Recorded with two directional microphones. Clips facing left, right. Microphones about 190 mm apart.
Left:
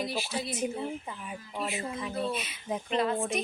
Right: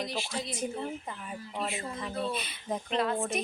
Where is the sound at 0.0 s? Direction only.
5° left (ahead or behind).